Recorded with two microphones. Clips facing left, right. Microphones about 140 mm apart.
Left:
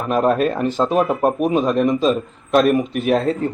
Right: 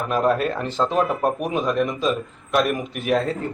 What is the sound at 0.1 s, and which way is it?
Speech, 20° left (ahead or behind).